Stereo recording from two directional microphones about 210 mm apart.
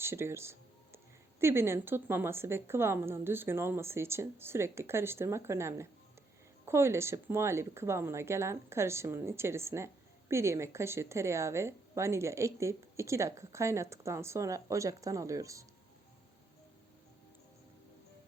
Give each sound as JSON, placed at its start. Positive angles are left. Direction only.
{"t": 0.0, "sound": "speech", "side_deg": -10}